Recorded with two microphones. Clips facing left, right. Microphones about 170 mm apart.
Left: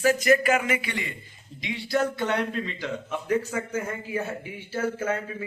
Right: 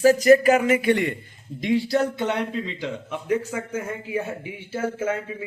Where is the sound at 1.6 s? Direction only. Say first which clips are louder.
Right 5 dB; 40° right (ahead or behind).